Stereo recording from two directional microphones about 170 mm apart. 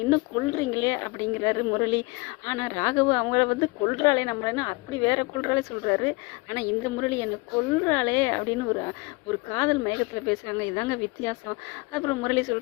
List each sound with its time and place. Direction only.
0.1 s speech: 20° left (ahead or behind)